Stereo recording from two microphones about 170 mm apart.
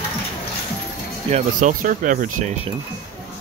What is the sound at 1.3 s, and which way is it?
Speech, 50° right (ahead or behind).